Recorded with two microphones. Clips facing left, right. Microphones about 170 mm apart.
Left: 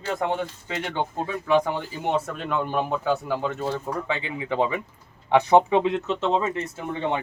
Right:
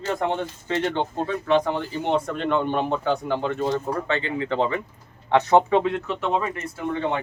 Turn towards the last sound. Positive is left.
turn(degrees=25)  # may be behind; listen again after turning